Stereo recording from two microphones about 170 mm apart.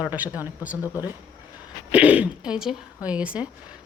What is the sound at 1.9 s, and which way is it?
Speech, 5° right (ahead or behind).